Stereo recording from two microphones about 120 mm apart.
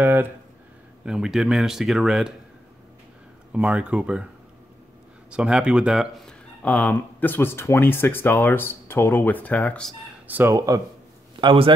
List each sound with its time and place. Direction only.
0.0 s speech: 20° right (ahead or behind)
1.0 s speech: 5° right (ahead or behind)
3.5 s speech: 10° right (ahead or behind)
5.3 s speech: 10° right (ahead or behind)
6.2 s speech: 10° left (ahead or behind)
10.2 s speech: 15° right (ahead or behind)
10.5 s speech: 30° right (ahead or behind)
11.4 s a man's voice: 50° right (ahead or behind)